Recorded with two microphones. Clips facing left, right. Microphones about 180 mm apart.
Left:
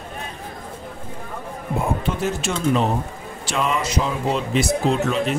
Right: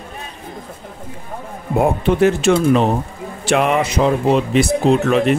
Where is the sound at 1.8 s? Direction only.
65° right (ahead or behind).